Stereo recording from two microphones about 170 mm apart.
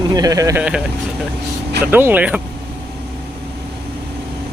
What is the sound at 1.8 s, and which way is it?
Speech, 10° right (ahead or behind).